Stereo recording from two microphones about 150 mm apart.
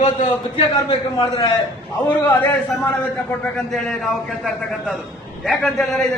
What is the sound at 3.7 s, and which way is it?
A man's voice, centre (ahead or behind).